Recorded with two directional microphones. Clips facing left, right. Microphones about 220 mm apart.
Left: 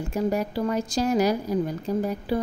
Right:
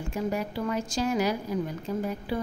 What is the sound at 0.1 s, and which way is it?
Speech, 40° left (ahead or behind).